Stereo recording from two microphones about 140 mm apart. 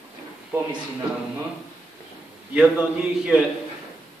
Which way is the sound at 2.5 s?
5° right (ahead or behind).